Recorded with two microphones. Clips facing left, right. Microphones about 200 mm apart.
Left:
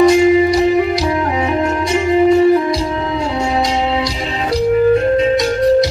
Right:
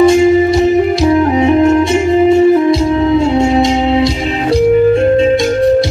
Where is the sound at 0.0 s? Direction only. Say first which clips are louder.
Right 2 dB; 25° right (ahead or behind).